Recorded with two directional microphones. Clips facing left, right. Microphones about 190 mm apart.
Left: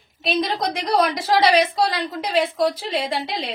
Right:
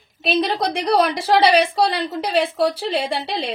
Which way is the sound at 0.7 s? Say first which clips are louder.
Right 2 dB; 30° right (ahead or behind).